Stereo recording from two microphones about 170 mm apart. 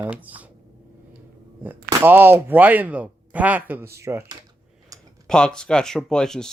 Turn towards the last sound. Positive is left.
turn(degrees=5)  # may be behind; listen again after turning